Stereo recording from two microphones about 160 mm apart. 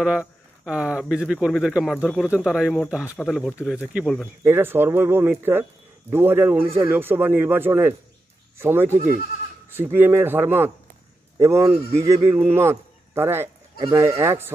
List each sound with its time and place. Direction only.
0.0 s speech: 5° right (ahead or behind)